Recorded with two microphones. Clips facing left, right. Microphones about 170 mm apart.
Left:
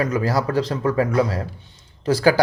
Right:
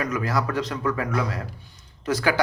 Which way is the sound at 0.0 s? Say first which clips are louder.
Left 5 dB; 30° left (ahead or behind).